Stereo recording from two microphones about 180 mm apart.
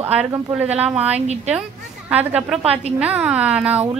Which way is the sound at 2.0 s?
10° right (ahead or behind).